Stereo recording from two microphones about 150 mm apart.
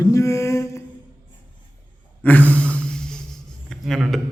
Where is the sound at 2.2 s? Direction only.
10° left (ahead or behind).